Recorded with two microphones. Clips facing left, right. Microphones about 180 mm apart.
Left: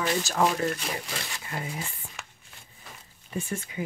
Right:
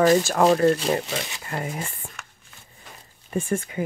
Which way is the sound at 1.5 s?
50° right (ahead or behind).